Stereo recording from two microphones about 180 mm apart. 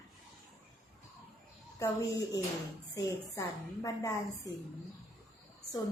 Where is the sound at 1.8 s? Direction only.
15° left (ahead or behind).